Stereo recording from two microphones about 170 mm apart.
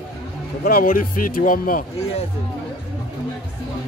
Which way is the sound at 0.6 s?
60° left (ahead or behind).